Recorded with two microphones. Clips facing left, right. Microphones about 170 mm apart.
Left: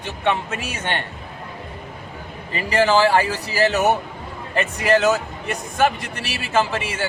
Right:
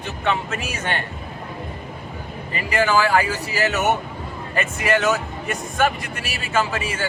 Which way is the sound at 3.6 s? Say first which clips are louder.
Left 3 dB; 35° left (ahead or behind).